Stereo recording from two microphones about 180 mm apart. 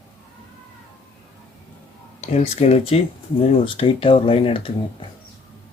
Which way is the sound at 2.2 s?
35° left (ahead or behind).